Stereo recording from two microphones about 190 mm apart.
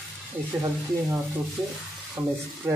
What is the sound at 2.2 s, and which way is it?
Speech, 15° right (ahead or behind).